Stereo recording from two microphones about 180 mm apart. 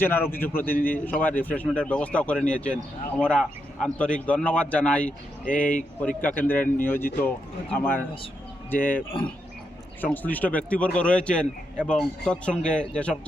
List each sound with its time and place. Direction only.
0.0 s speech: 10° left (ahead or behind)
5.5 s speech: 50° left (ahead or behind)
6.0 s speech: 10° left (ahead or behind)
10.0 s speech: 10° left (ahead or behind)